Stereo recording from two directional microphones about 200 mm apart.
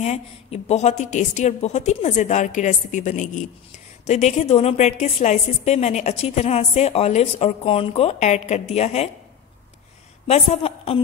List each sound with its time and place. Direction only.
0.0 s a woman's voice: 35° left (ahead or behind)
10.2 s a woman's voice: 30° left (ahead or behind)